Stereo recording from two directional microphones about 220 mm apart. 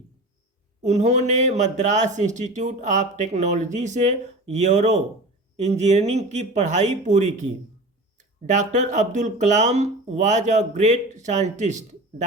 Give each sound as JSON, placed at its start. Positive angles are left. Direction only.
{"t": 0.8, "sound": "a man's voice", "side_deg": -30}